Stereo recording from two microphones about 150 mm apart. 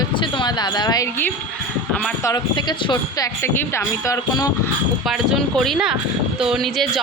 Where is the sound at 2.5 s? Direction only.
30° left (ahead or behind).